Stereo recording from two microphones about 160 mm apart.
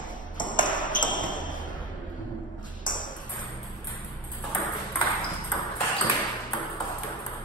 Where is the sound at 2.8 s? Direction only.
55° left (ahead or behind).